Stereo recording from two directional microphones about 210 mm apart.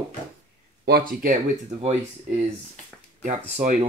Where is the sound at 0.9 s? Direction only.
45° right (ahead or behind).